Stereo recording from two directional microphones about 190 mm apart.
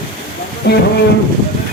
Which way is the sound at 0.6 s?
60° left (ahead or behind).